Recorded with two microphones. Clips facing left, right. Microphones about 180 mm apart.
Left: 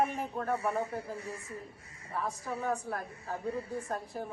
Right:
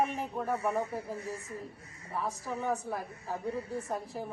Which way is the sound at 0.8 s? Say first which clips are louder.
Right 1 dB; 35° right (ahead or behind).